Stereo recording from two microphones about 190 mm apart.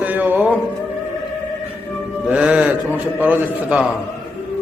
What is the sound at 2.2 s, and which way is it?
A man's voice, 5° right (ahead or behind).